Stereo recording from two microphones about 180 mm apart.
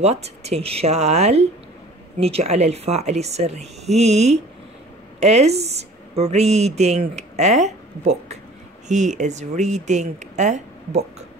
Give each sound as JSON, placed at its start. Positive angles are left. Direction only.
{"t": 0.0, "sound": "speech", "side_deg": -35}